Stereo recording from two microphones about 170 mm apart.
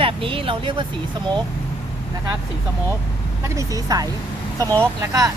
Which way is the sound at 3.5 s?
20° right (ahead or behind).